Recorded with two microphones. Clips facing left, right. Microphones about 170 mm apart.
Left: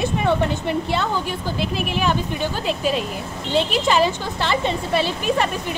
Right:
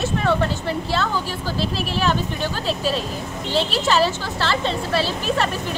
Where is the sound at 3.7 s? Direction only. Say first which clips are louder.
Even; 15° left (ahead or behind).